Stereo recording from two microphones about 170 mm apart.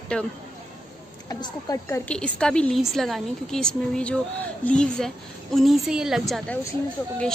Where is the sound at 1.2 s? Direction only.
25° left (ahead or behind).